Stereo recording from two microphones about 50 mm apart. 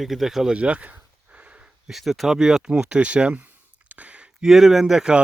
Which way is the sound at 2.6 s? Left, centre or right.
Centre.